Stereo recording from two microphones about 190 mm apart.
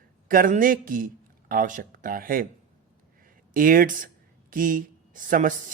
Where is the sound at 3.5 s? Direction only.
45° right (ahead or behind).